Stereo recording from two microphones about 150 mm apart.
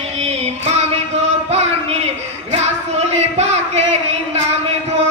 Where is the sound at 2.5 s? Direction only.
45° right (ahead or behind).